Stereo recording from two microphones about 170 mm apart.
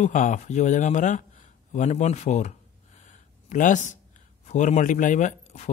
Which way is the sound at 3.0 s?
50° left (ahead or behind).